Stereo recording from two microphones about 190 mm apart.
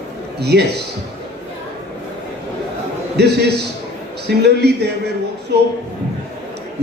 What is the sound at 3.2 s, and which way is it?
Speech, 60° right (ahead or behind).